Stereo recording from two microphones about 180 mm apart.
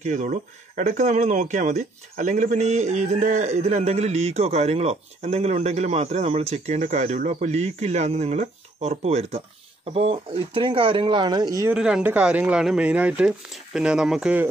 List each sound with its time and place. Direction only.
0.0 s speech: 45° right (ahead or behind); by 11.7 s 20° right (ahead or behind)
11.7 s speech: 5° right (ahead or behind)